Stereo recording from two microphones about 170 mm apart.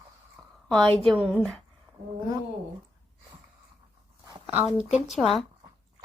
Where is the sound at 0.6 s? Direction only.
5° left (ahead or behind).